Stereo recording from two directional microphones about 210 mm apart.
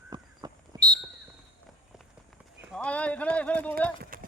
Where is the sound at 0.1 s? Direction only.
20° right (ahead or behind).